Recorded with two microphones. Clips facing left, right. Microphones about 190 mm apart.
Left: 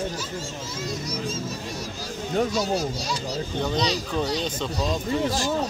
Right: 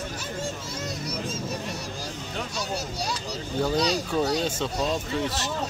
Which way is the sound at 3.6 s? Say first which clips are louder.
Right 2 dB; 5° right (ahead or behind).